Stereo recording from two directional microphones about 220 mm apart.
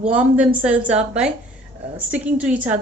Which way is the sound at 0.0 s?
5° right (ahead or behind).